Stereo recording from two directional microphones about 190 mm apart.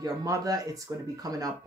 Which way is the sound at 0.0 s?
15° right (ahead or behind).